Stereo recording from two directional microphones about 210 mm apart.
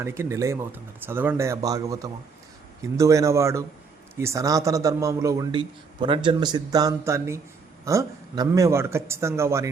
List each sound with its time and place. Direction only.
0.0 s a man's voice: 10° right (ahead or behind)